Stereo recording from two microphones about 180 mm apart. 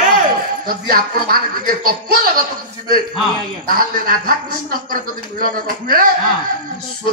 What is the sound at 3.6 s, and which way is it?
A man's voice, 55° right (ahead or behind).